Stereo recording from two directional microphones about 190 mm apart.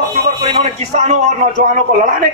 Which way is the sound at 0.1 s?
35° right (ahead or behind).